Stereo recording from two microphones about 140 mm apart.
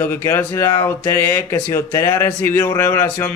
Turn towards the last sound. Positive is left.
turn(degrees=15)  # may be behind; listen again after turning